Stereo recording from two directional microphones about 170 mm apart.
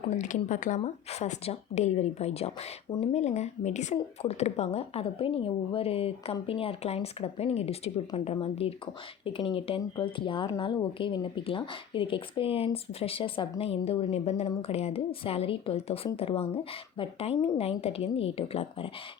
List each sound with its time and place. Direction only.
0.1 s speech: 45° left (ahead or behind)